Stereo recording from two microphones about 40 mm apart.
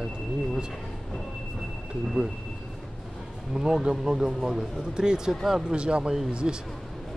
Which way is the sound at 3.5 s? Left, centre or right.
Centre.